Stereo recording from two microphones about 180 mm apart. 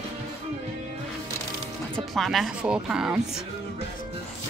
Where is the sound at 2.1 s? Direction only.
Centre (ahead or behind).